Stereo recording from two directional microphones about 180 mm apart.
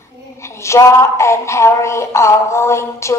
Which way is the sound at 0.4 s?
15° left (ahead or behind).